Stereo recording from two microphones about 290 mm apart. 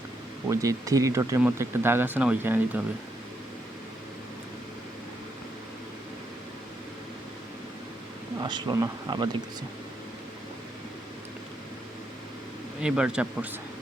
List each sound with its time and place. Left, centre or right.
0.4 s speech: centre
8.4 s speech: centre
12.8 s speech: centre